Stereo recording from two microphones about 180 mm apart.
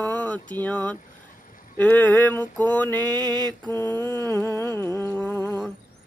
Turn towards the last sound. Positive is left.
turn(degrees=10)  # may be behind; listen again after turning